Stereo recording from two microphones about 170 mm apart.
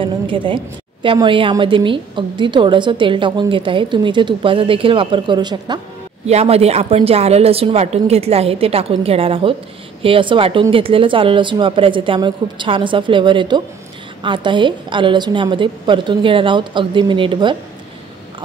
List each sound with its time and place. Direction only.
0.0 s a sound: 30° right (ahead or behind)
1.0 s a woman's voice: 30° right (ahead or behind)
6.2 s a woman's voice: 35° right (ahead or behind)